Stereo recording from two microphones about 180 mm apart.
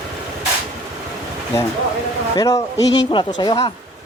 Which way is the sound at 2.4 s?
20° left (ahead or behind).